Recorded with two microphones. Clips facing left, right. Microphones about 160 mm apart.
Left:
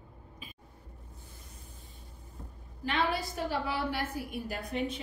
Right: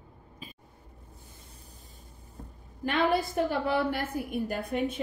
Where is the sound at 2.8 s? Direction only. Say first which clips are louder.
Right 5 dB; 55° right (ahead or behind).